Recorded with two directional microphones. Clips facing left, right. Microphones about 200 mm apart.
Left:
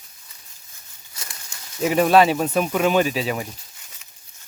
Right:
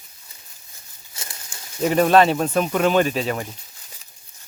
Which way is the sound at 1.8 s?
5° left (ahead or behind).